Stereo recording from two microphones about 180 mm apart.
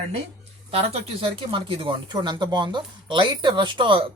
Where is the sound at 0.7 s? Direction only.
30° right (ahead or behind).